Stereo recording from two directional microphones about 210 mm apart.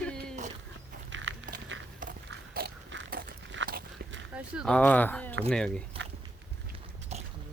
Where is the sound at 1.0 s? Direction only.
65° right (ahead or behind).